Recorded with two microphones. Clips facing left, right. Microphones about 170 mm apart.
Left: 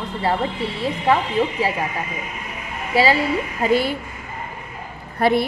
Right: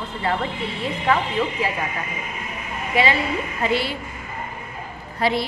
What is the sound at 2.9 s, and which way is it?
A woman's voice, 35° left (ahead or behind).